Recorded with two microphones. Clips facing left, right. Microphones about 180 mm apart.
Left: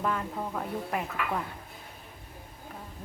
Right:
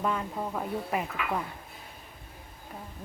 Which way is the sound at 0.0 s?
5° right (ahead or behind).